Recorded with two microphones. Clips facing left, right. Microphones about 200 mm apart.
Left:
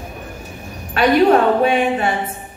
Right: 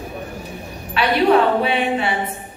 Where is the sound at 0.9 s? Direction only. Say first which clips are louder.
Left 3 dB; 45° left (ahead or behind).